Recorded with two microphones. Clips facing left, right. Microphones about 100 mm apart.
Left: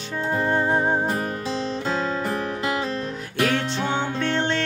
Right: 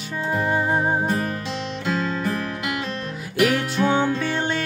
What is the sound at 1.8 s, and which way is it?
Music, 35° left (ahead or behind).